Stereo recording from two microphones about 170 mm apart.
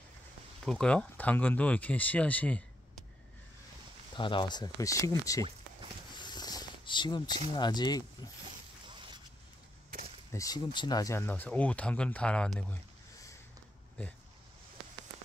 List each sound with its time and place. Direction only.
0.7 s speech: 5° left (ahead or behind)
4.2 s speech: 30° left (ahead or behind)
5.4 s a sound: 30° right (ahead or behind)
6.1 s a sound: 25° left (ahead or behind)
7.5 s speech: 25° left (ahead or behind)
10.3 s speech: 20° left (ahead or behind)